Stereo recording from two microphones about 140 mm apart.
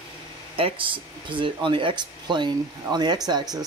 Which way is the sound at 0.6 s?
40° right (ahead or behind).